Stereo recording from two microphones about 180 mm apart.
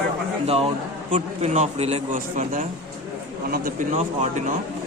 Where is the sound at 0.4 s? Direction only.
35° right (ahead or behind).